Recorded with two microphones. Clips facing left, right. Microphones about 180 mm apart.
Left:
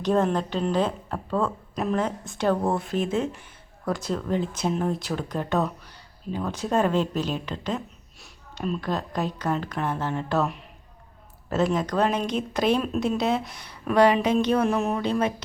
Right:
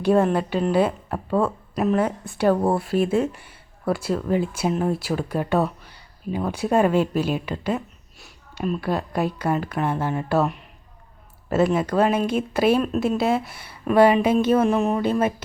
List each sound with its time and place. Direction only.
0.0 s a woman's voice: 10° right (ahead or behind)